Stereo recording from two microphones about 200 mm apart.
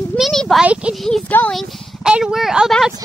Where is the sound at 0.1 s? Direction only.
Centre (ahead or behind).